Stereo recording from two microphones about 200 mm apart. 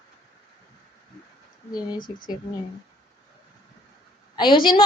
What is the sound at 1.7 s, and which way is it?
Speech, 20° left (ahead or behind).